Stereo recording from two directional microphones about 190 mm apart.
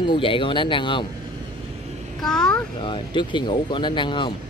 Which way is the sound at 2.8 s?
25° left (ahead or behind).